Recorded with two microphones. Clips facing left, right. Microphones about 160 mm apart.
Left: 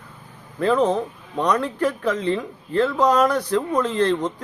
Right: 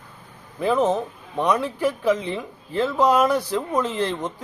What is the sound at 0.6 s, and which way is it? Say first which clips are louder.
Speech: left 1 dB; 10° right (ahead or behind).